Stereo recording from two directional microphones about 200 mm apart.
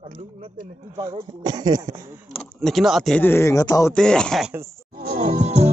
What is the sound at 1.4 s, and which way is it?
Speech, 20° right (ahead or behind).